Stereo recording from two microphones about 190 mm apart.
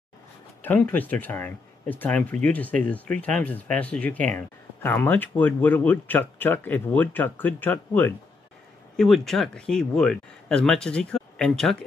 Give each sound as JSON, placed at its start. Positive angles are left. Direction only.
{"t": 0.6, "sound": "speech", "side_deg": 10}